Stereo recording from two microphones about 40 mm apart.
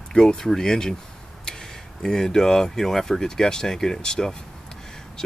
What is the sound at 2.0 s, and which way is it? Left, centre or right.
Speech, centre.